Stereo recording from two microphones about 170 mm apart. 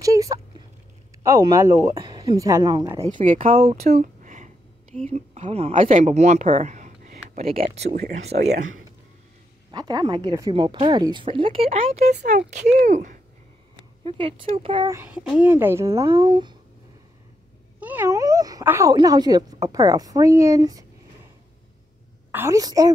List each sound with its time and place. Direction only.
0.0 s a sound: 20° right (ahead or behind)
1.2 s speech: 20° right (ahead or behind)
3.4 s speech: 35° right (ahead or behind)
3.9 s a sound: 45° right (ahead or behind)
5.0 s a woman's voice: 40° right (ahead or behind)
7.5 s speech: 35° right (ahead or behind)
8.3 s speech: 55° right (ahead or behind)
9.7 s speech: 25° right (ahead or behind); by 13.2 s 45° right (ahead or behind)
14.0 s speech: 30° right (ahead or behind)
14.9 s speech: 10° right (ahead or behind); by 16.5 s 25° right (ahead or behind)
17.7 s speech: 10° right (ahead or behind)
22.3 s speech: 15° right (ahead or behind)